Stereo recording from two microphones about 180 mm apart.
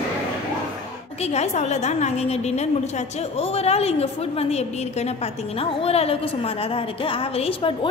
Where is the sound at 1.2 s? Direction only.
35° left (ahead or behind).